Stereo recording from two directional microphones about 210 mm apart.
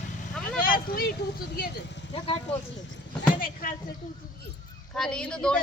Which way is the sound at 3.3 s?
40° left (ahead or behind).